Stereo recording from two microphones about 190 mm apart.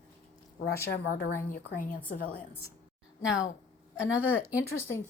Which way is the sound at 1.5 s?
45° left (ahead or behind).